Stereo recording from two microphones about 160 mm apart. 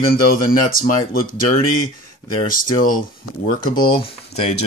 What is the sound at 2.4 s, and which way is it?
Speech, 60° left (ahead or behind).